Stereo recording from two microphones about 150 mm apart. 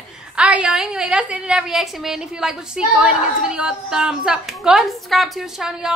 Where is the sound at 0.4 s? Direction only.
5° right (ahead or behind).